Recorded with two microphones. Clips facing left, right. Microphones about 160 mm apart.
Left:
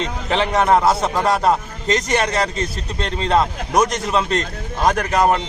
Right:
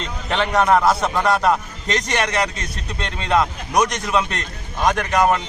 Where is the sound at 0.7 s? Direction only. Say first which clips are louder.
Left 2 dB; 25° left (ahead or behind).